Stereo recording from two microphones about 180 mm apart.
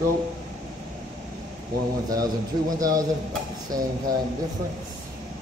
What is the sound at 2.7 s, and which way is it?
Speech, 20° right (ahead or behind).